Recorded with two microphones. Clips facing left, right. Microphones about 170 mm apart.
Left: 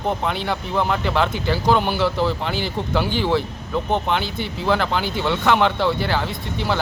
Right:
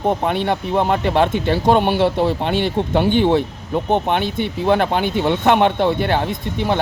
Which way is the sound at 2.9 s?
25° right (ahead or behind).